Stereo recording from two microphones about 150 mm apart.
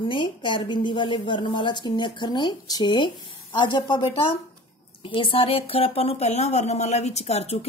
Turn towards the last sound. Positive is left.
turn(degrees=45)  # may be behind; listen again after turning